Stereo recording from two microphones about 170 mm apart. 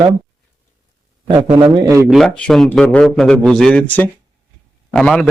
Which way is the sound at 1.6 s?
30° right (ahead or behind).